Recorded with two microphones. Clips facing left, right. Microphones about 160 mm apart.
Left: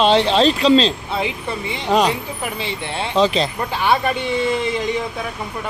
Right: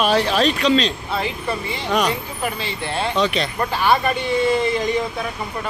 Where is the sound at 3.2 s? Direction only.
30° left (ahead or behind).